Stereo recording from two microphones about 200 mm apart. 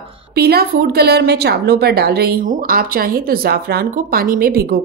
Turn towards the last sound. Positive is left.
turn(degrees=-50)  # may be behind; listen again after turning